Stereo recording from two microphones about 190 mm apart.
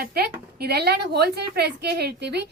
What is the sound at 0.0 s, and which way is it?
A woman's voice, 55° right (ahead or behind).